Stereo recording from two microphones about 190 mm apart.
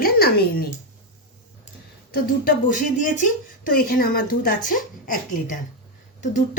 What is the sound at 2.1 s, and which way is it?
A woman's voice, 50° left (ahead or behind).